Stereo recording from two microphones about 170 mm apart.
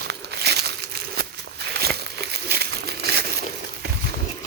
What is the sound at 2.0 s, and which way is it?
Crumpling, 75° right (ahead or behind).